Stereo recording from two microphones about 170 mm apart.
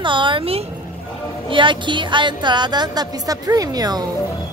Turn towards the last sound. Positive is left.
turn(degrees=-20)  # may be behind; listen again after turning